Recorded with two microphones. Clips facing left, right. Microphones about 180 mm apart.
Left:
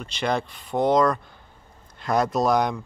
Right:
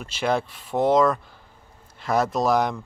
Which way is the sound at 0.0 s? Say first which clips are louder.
Right 1 dB; 5° right (ahead or behind).